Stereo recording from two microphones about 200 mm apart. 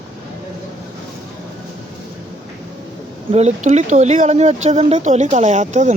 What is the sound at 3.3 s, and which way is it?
Speech, 35° right (ahead or behind).